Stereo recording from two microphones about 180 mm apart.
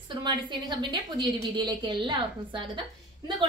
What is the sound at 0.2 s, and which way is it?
A woman's voice, 25° right (ahead or behind).